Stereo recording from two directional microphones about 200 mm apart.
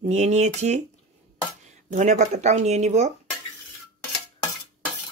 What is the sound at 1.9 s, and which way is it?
Speech, 35° right (ahead or behind).